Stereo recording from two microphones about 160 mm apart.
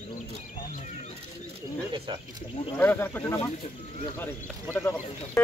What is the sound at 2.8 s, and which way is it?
Speech, 10° left (ahead or behind).